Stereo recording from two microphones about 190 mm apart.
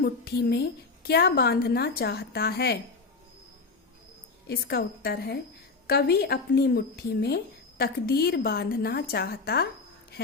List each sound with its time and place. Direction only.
0.0 s speech: 55° left (ahead or behind)
4.4 s speech: 55° left (ahead or behind)